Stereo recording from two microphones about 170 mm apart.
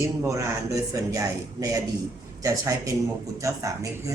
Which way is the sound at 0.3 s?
20° right (ahead or behind).